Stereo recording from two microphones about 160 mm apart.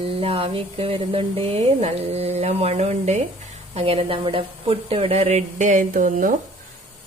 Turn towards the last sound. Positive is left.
turn(degrees=-55)  # may be behind; listen again after turning